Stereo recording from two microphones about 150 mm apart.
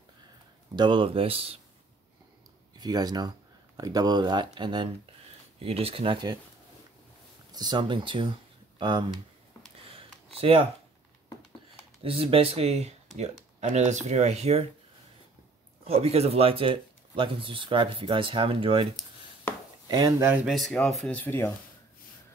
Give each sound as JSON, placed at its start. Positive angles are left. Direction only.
{"t": 0.7, "sound": "speech", "side_deg": -30}
{"t": 2.8, "sound": "speech", "side_deg": -25}
{"t": 7.5, "sound": "speech", "side_deg": -30}
{"t": 9.8, "sound": "a sound", "side_deg": -40}
{"t": 12.0, "sound": "speech", "side_deg": -40}
{"t": 15.8, "sound": "speech", "side_deg": -40}
{"t": 19.9, "sound": "speech", "side_deg": -20}
{"t": 20.5, "sound": "speech", "side_deg": 0}